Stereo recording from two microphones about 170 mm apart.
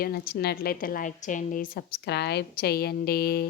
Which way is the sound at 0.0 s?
65° left (ahead or behind).